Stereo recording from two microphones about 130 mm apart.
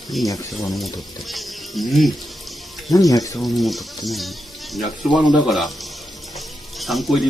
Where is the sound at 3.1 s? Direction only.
25° left (ahead or behind).